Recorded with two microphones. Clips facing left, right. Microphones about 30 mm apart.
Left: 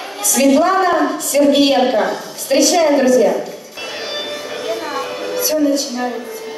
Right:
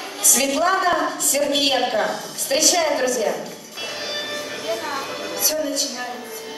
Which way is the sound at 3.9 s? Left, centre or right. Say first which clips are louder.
Left 4 dB; centre.